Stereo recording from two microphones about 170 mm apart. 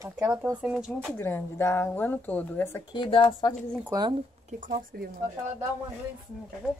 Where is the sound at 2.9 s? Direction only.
30° left (ahead or behind).